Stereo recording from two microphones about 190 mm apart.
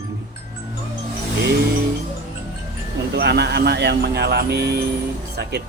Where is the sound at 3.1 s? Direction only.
60° right (ahead or behind).